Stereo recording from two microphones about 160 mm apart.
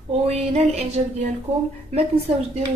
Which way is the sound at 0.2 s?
40° right (ahead or behind).